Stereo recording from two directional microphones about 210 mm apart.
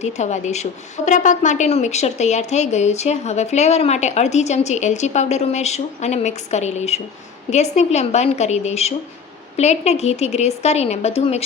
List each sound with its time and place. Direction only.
0.0 s a woman's voice: 35° left (ahead or behind)